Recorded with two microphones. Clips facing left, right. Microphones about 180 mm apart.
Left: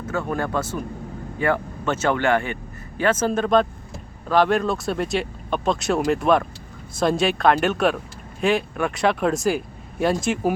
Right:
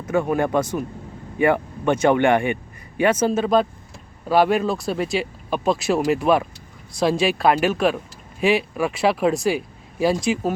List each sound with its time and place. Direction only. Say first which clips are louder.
0.1 s speech: right 5 dB; 15° right (ahead or behind); by 10.4 s centre (ahead or behind)